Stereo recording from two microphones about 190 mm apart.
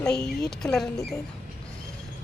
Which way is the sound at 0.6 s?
5° left (ahead or behind).